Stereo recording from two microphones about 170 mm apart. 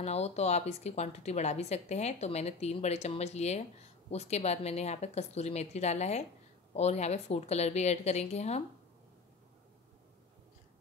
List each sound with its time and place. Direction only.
0.0 s a woman's voice: 40° left (ahead or behind)